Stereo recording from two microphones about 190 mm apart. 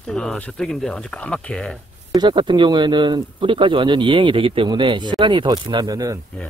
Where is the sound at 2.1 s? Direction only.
25° right (ahead or behind).